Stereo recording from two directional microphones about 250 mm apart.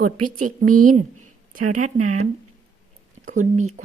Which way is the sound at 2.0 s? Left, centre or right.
Right.